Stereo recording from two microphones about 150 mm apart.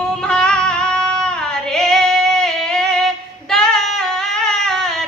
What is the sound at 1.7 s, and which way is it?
Female singing, centre (ahead or behind).